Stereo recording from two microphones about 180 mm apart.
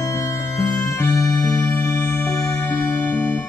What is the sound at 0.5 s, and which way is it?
Music, 15° left (ahead or behind).